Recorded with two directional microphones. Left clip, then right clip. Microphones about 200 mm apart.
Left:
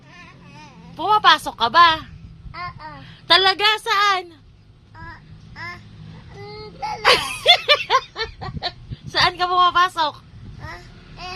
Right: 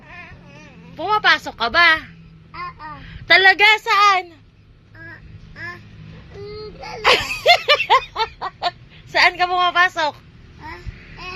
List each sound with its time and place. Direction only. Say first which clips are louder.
0.9 s speech: left 2 dB; 15° left (ahead or behind)
2.5 s babbling: right 1 dB; 20° left (ahead or behind)
3.2 s speech: right 4 dB; 5° left (ahead or behind)
7.0 s laughter: right 1 dB; 10° left (ahead or behind)
9.1 s a woman's voice: right 2 dB; 5° left (ahead or behind)